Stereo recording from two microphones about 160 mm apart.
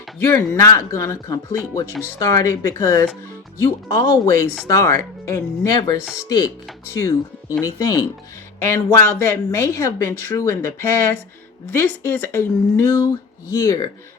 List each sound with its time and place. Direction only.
0.3 s speech: 15° left (ahead or behind)